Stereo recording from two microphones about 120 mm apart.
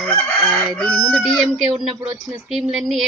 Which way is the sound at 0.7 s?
5° left (ahead or behind).